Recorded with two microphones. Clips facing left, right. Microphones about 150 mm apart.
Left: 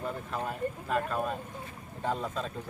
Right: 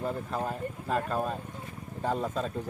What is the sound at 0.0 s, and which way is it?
Speech, 35° right (ahead or behind).